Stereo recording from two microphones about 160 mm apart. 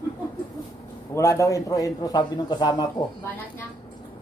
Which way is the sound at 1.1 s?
20° left (ahead or behind).